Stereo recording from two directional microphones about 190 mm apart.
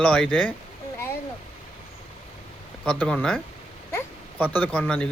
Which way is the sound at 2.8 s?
5° left (ahead or behind).